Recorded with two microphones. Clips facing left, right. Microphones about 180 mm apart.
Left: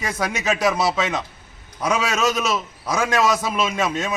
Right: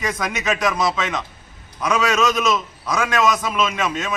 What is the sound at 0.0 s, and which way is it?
Speech, 30° left (ahead or behind).